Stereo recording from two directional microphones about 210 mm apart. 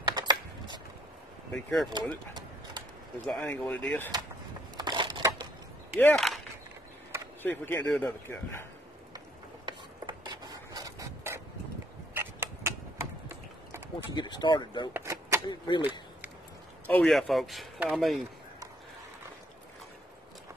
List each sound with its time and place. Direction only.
0.1 s a sound: 20° right (ahead or behind)
1.5 s a man's voice: centre (ahead or behind)
3.3 s speech: 5° left (ahead or behind)
4.7 s crushing: 20° right (ahead or behind)
5.9 s speech: 5° left (ahead or behind)
7.4 s speech: 10° left (ahead or behind)
9.7 s a sound: 20° right (ahead or behind)
14.1 s speech: 20° left (ahead or behind)
15.0 s a sound: 15° right (ahead or behind)
15.4 s speech: 20° left (ahead or behind)
16.8 s a man's voice: 5° left (ahead or behind)